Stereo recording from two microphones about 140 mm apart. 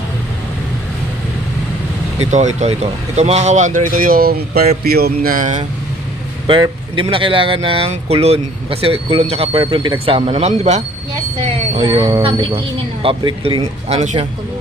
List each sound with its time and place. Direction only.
2.6 s speech: 50° right (ahead or behind); by 5.6 s 65° right (ahead or behind)
6.5 s speech: 35° right (ahead or behind); by 10.8 s 50° right (ahead or behind)
11.8 s speech: 30° right (ahead or behind)
13.8 s speech: 55° right (ahead or behind)